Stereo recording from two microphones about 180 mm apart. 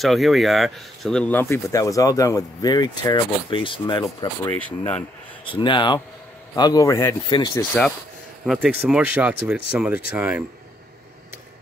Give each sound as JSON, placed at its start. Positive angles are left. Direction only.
{"t": 0.0, "sound": "speech", "side_deg": 0}
{"t": 4.5, "sound": "speech", "side_deg": 10}
{"t": 5.4, "sound": "speech", "side_deg": 30}
{"t": 7.5, "sound": "speech", "side_deg": 5}